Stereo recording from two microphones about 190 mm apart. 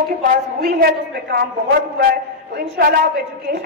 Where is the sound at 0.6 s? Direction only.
55° right (ahead or behind).